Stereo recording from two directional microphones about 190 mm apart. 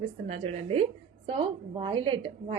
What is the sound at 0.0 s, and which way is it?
A woman's voice, 30° right (ahead or behind).